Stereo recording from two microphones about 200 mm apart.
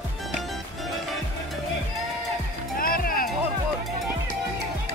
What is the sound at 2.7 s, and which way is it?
Music, 45° left (ahead or behind).